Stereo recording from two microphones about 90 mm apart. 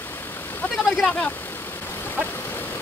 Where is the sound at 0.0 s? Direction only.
25° left (ahead or behind).